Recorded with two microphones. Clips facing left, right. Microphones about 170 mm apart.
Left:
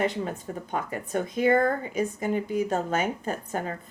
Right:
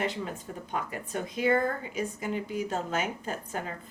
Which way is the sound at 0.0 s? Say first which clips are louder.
Left 5 dB; 45° left (ahead or behind).